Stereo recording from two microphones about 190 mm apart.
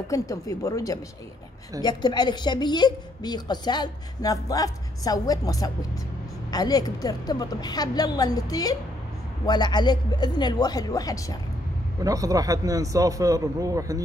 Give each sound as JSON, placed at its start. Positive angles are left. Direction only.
{"t": 0.1, "sound": "a woman's voice", "side_deg": 15}
{"t": 12.0, "sound": "a man's voice", "side_deg": -20}